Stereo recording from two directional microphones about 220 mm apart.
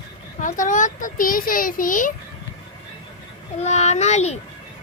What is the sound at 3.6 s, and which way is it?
Speech, 30° left (ahead or behind).